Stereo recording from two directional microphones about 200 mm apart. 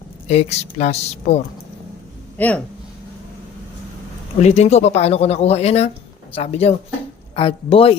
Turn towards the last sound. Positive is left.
turn(degrees=30)  # may be behind; listen again after turning